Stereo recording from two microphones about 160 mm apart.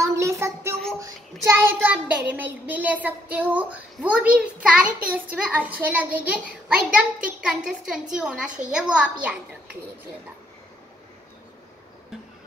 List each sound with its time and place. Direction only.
0.0 s child singing: 20° right (ahead or behind)
8.7 s a child's voice: 5° right (ahead or behind)